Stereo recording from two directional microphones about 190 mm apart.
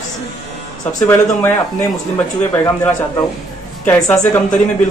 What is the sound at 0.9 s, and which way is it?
Speech, 15° left (ahead or behind).